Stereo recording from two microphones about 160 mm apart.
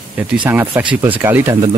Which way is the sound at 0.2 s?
10° right (ahead or behind).